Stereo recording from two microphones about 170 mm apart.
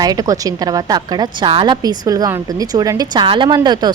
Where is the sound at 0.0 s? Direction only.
20° right (ahead or behind).